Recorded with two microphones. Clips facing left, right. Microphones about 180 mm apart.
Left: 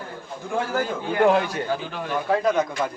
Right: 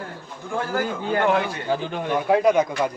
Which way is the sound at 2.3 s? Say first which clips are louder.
Right 3 dB; 20° right (ahead or behind).